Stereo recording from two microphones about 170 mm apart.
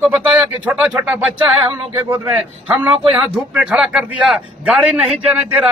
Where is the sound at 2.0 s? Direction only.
20° right (ahead or behind).